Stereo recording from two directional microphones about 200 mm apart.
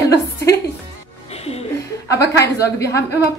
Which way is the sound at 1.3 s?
30° left (ahead or behind).